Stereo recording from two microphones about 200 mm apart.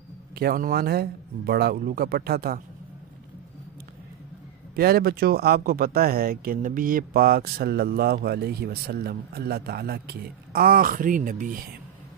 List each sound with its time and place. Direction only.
0.4 s speech: 50° right (ahead or behind)
4.7 s speech: 50° right (ahead or behind)